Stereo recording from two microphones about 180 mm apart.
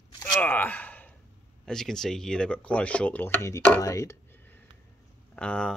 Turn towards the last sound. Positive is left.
turn(degrees=5)  # may be behind; listen again after turning